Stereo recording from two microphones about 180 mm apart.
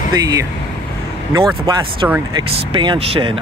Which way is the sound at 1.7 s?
25° right (ahead or behind).